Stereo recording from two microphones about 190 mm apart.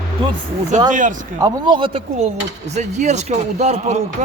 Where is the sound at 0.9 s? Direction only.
40° right (ahead or behind).